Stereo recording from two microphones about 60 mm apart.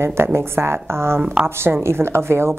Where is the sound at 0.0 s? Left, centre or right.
Right.